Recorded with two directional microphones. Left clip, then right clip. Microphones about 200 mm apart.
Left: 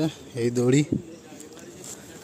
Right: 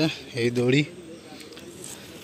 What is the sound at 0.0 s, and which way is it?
Speech, 15° left (ahead or behind).